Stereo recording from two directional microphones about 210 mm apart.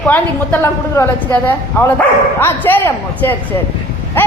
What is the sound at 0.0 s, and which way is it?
A woman's voice, 10° left (ahead or behind).